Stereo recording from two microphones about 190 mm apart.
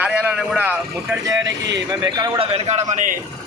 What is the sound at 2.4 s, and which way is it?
Speech, 35° right (ahead or behind).